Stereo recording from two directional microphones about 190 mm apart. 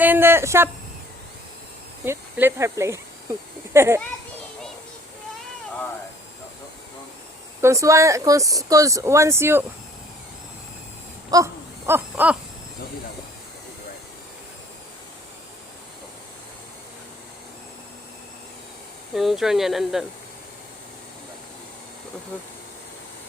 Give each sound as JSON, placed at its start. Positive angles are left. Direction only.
{"t": 0.0, "sound": "speech", "side_deg": -10}
{"t": 2.0, "sound": "speech", "side_deg": -15}
{"t": 7.6, "sound": "speech", "side_deg": -15}
{"t": 11.3, "sound": "a sound", "side_deg": -20}
{"t": 11.9, "sound": "speech", "side_deg": -10}
{"t": 19.1, "sound": "speech", "side_deg": 0}